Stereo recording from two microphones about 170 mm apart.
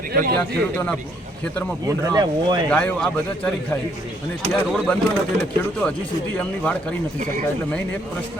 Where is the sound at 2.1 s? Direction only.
25° right (ahead or behind).